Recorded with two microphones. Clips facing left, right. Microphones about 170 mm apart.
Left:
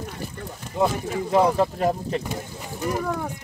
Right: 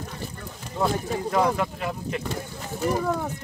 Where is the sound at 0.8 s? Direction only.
15° left (ahead or behind).